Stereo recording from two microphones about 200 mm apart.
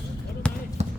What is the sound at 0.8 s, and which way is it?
Basketball bounce, 35° right (ahead or behind).